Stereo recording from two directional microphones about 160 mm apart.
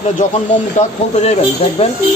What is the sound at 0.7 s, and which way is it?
Speech, 40° left (ahead or behind).